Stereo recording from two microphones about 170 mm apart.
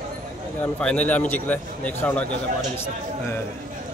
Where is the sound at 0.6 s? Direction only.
5° left (ahead or behind).